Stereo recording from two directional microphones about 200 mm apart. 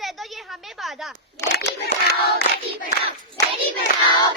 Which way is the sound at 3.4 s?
15° left (ahead or behind).